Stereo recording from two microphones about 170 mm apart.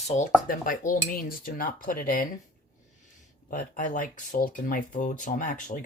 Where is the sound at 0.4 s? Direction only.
55° left (ahead or behind).